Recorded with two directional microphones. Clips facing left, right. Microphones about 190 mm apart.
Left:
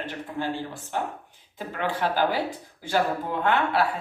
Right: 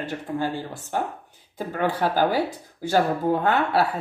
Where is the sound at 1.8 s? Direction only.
40° right (ahead or behind).